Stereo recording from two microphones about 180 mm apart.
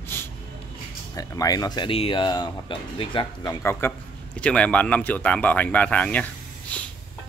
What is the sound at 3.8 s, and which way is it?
Speech, 15° left (ahead or behind).